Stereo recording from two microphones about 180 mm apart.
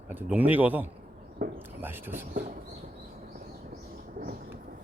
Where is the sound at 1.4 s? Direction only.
55° right (ahead or behind).